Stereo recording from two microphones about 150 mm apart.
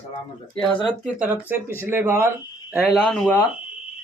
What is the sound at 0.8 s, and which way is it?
Speech, 5° right (ahead or behind).